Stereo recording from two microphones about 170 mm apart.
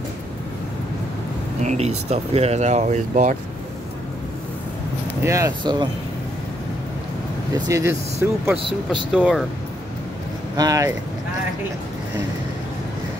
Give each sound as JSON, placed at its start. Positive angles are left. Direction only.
{"t": 1.6, "sound": "speech", "side_deg": -40}
{"t": 5.2, "sound": "speech", "side_deg": -20}
{"t": 7.5, "sound": "speech", "side_deg": -20}
{"t": 9.1, "sound": "speech", "side_deg": -5}
{"t": 10.5, "sound": "speech", "side_deg": -20}